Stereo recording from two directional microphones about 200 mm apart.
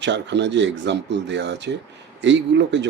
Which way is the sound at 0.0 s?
60° right (ahead or behind).